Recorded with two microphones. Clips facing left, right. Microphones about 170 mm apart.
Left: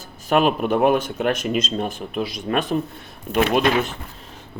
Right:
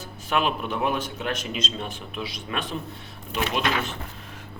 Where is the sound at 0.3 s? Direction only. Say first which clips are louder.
Left 7 dB; 45° left (ahead or behind).